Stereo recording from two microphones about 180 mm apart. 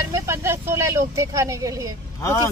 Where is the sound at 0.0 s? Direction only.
15° right (ahead or behind).